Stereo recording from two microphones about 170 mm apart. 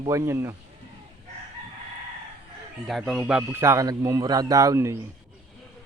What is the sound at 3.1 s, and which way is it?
Speech, 5° right (ahead or behind).